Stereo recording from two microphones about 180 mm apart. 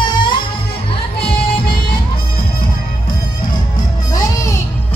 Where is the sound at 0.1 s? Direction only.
25° left (ahead or behind).